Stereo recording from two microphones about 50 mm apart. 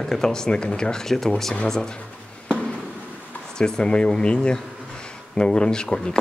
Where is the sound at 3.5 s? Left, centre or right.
Centre.